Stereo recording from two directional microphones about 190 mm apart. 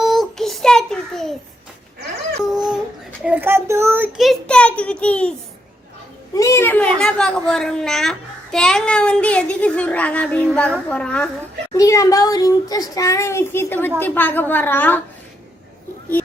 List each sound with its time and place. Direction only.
0.0 s child singing: centre (ahead or behind)
2.4 s a sound: 5° right (ahead or behind)
3.2 s a child's voice: 10° right (ahead or behind); by 5.3 s 5° left (ahead or behind)
6.3 s a child's voice: 15° left (ahead or behind)
11.7 s a child's voice: 15° left (ahead or behind)